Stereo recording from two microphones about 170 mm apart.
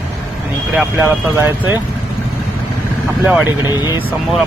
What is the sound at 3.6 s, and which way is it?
Speech, 25° left (ahead or behind).